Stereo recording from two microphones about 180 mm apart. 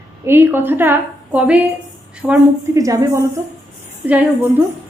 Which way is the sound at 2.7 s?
20° right (ahead or behind).